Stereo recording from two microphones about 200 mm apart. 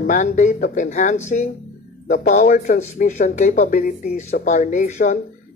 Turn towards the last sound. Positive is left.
turn(degrees=40)  # may be behind; listen again after turning